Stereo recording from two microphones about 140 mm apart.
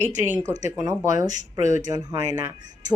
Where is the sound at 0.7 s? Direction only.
25° right (ahead or behind).